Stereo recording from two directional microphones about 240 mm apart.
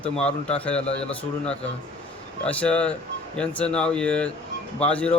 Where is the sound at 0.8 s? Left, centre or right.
Left.